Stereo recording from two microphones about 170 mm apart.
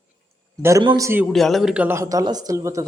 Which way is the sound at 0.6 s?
20° right (ahead or behind).